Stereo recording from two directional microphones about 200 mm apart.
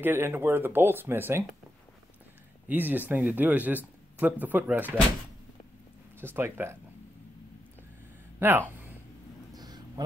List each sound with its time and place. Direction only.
0.0 s speech: 10° right (ahead or behind)
2.7 s speech: 10° right (ahead or behind)
6.2 s speech: 10° right (ahead or behind)
8.4 s speech: 10° right (ahead or behind)
9.6 s a sound: 20° right (ahead or behind)